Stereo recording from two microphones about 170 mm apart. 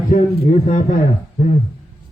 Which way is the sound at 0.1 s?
45° left (ahead or behind).